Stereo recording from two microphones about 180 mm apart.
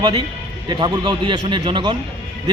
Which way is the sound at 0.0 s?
25° right (ahead or behind).